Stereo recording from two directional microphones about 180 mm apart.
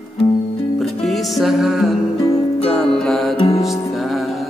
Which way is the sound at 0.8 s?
Centre (ahead or behind).